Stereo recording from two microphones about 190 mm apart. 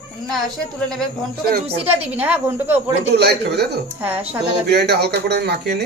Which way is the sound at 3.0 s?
60° right (ahead or behind).